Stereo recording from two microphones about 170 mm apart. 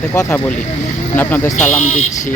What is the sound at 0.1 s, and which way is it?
Speech, 15° left (ahead or behind).